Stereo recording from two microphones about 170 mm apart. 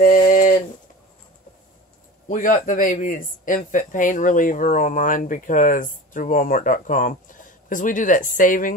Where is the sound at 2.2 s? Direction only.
50° left (ahead or behind).